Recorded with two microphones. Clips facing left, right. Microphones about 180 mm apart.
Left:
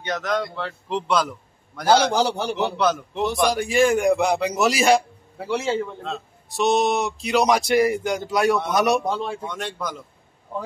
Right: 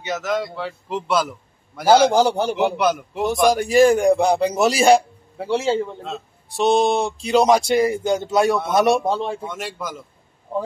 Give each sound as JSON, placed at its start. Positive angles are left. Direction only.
{"t": 0.0, "sound": "a man's voice", "side_deg": -5}
{"t": 2.0, "sound": "a man's voice", "side_deg": -50}
{"t": 2.5, "sound": "a man's voice", "side_deg": -10}
{"t": 3.2, "sound": "a man's voice", "side_deg": -45}
{"t": 9.5, "sound": "a man's voice", "side_deg": -5}